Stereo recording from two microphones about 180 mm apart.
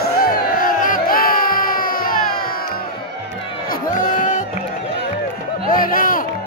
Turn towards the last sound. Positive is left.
turn(degrees=50)  # may be behind; listen again after turning